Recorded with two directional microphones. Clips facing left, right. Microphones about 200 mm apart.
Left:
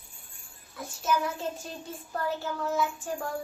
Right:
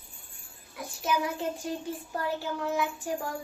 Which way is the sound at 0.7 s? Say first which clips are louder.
Left 1 dB; 15° right (ahead or behind).